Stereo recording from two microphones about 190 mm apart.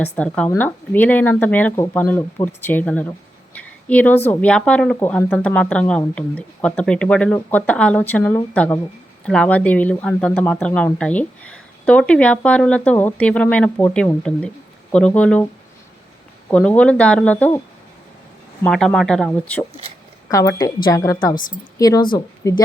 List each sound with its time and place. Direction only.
0.0 s speech: 5° left (ahead or behind)
16.5 s speech: 5° left (ahead or behind)
18.6 s speech: 5° left (ahead or behind)
20.3 s speech: 15° left (ahead or behind)